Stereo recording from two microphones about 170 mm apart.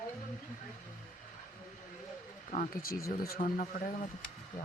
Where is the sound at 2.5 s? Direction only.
50° left (ahead or behind).